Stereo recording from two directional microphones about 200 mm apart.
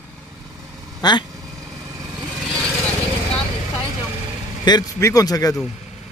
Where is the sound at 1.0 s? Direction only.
20° left (ahead or behind).